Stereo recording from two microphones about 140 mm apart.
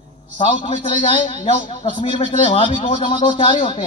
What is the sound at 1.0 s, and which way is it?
Speech, 35° left (ahead or behind).